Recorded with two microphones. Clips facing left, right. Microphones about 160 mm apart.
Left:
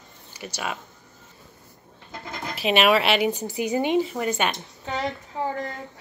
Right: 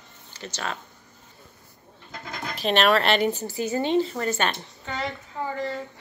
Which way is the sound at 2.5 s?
5° left (ahead or behind).